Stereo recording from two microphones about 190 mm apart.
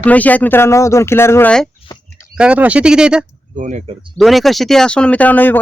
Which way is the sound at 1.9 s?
20° left (ahead or behind).